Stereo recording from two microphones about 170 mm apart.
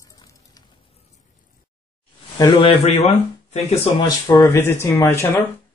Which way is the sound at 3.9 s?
20° left (ahead or behind).